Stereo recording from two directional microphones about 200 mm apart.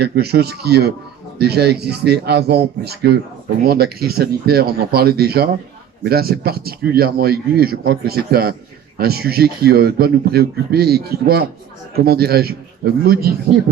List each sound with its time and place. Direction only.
0.0 s speech: 55° right (ahead or behind)